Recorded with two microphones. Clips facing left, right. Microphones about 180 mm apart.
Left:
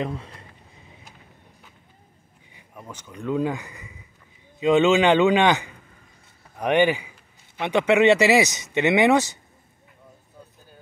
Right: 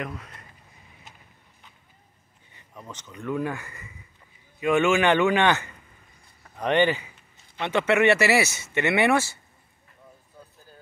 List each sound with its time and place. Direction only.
0.0 s speech: 30° left (ahead or behind)
2.5 s a sound: 10° left (ahead or behind)
3.2 s speech: 15° left (ahead or behind)